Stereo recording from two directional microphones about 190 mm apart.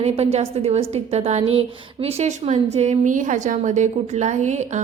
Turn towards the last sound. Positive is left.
turn(degrees=-40)  # may be behind; listen again after turning